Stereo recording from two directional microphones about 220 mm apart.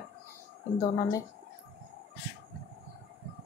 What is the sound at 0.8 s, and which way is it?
Speech, 15° left (ahead or behind).